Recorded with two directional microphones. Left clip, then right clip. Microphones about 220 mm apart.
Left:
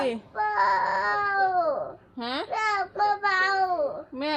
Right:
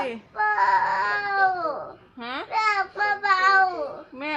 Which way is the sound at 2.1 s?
15° left (ahead or behind).